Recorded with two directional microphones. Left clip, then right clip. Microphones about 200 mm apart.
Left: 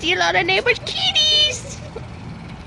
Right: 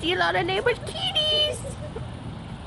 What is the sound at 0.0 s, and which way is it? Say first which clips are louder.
Speech: left 6 dB; 5° left (ahead or behind).